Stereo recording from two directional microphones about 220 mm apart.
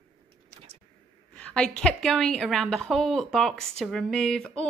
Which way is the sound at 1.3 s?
5° left (ahead or behind).